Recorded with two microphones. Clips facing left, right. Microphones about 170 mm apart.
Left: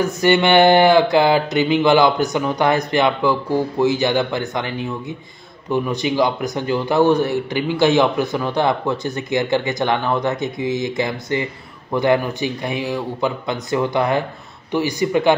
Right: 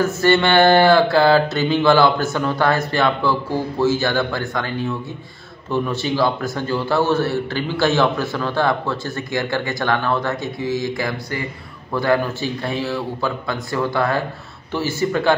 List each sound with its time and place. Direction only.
0.0 s a man's voice: 15° left (ahead or behind)